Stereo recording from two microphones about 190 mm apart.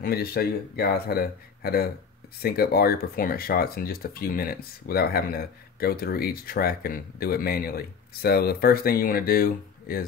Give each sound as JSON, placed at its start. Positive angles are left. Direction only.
{"t": 0.0, "sound": "speech", "side_deg": 55}